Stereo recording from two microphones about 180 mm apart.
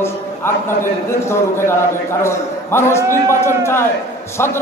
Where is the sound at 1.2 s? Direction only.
15° left (ahead or behind).